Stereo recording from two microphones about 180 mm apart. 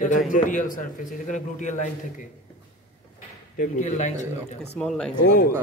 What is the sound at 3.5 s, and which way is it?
A man's voice, 45° left (ahead or behind).